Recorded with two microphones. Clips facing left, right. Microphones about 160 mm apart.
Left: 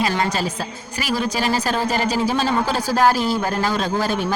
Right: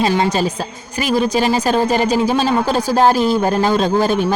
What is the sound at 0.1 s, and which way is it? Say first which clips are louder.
Speech: right 5 dB; 20° right (ahead or behind).